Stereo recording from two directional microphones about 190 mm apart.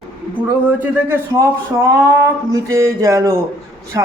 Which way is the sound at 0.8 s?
15° right (ahead or behind).